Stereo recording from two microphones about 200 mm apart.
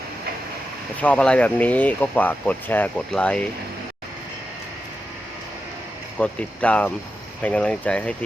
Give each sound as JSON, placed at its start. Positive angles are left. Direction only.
{"t": 1.0, "sound": "speech", "side_deg": 5}
{"t": 6.1, "sound": "speech", "side_deg": 5}